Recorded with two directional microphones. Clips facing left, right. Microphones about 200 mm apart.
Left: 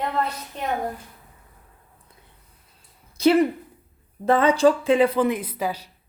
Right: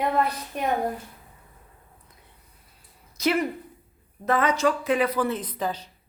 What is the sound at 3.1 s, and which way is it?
A woman's voice, 30° left (ahead or behind).